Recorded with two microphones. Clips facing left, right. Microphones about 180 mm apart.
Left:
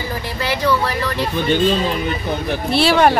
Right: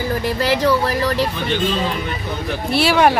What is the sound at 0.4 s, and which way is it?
Speech, 40° right (ahead or behind).